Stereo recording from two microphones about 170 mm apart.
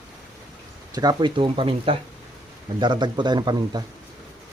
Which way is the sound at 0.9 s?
25° right (ahead or behind).